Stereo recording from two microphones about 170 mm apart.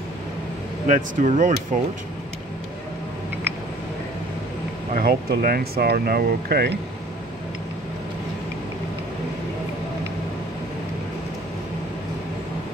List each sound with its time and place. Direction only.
0.8 s speech: 50° right (ahead or behind)
4.9 s speech: 60° right (ahead or behind)